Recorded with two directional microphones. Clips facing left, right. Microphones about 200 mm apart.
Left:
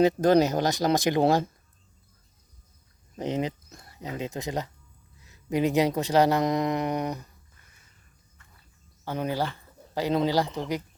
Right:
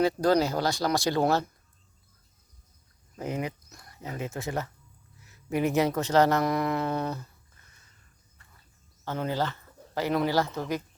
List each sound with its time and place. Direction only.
0.0 s speech: 20° left (ahead or behind)
3.2 s speech: 20° left (ahead or behind)
9.0 s speech: 15° left (ahead or behind)